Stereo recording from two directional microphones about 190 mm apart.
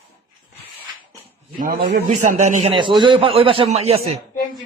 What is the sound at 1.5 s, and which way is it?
A man's voice, 45° right (ahead or behind).